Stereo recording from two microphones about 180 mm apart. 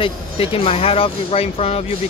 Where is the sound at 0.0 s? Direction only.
30° left (ahead or behind).